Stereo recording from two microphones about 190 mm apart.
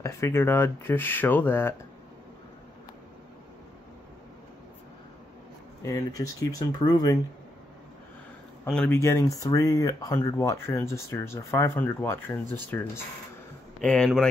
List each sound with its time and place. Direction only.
0.0 s speech: 15° left (ahead or behind)
5.8 s speech: 15° left (ahead or behind)
8.6 s speech: 5° left (ahead or behind)